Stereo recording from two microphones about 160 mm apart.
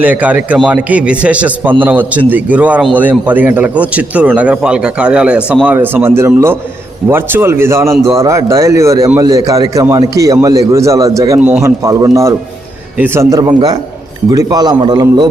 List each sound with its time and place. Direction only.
0.0 s a man's voice: 10° right (ahead or behind)
11.3 s a man's voice: 10° right (ahead or behind); by 15.0 s 25° right (ahead or behind)